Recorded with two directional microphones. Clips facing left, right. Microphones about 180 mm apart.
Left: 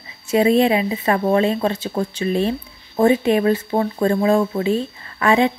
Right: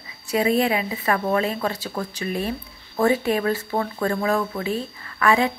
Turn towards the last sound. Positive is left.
turn(degrees=20)  # may be behind; listen again after turning